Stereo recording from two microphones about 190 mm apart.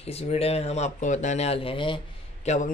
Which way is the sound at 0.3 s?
35° left (ahead or behind).